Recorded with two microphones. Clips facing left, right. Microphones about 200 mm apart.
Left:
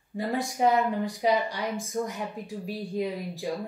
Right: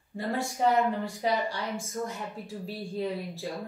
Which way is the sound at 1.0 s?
15° left (ahead or behind).